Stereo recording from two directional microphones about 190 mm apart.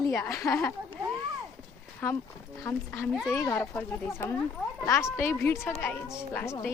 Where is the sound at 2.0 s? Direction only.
10° left (ahead or behind).